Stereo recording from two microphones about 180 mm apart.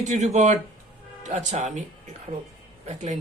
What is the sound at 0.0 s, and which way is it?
Speech, 40° right (ahead or behind).